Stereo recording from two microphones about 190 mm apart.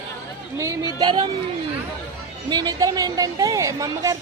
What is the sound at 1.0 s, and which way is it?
Speech, 25° right (ahead or behind).